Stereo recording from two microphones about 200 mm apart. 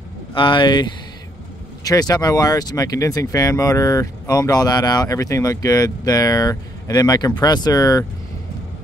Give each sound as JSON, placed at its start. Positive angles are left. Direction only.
{"t": 0.3, "sound": "speech", "side_deg": 25}
{"t": 1.9, "sound": "speech", "side_deg": 20}